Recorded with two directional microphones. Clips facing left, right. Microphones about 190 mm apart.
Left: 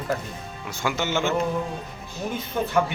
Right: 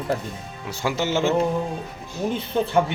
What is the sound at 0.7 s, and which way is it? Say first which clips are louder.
Speech: right 3 dB; 35° right (ahead or behind).